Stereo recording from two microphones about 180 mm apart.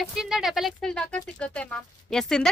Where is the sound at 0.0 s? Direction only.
Centre (ahead or behind).